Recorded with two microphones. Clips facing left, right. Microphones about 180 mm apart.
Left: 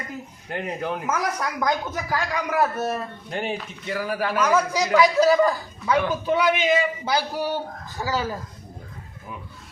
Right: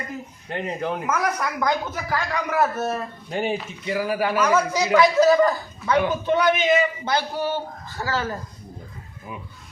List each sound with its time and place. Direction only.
0.5 s a man's voice: 5° left (ahead or behind)
3.2 s a man's voice: centre (ahead or behind)
4.9 s a man's voice: 10° left (ahead or behind)